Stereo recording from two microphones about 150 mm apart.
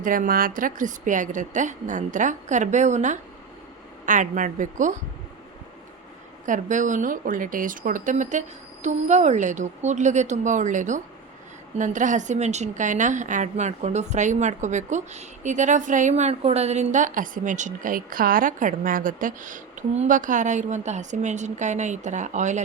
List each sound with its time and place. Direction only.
0.0 s speech: 65° right (ahead or behind)
6.4 s a woman's voice: 55° right (ahead or behind)